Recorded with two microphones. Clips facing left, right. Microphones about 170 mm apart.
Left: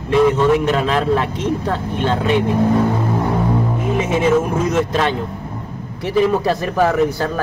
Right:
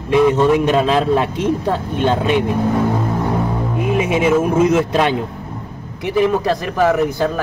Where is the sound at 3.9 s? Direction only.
15° right (ahead or behind).